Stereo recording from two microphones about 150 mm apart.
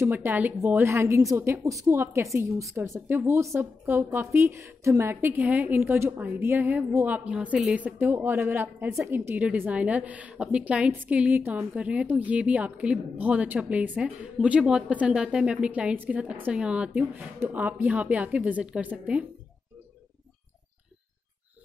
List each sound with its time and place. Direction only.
0.0 s a woman's voice: 15° right (ahead or behind)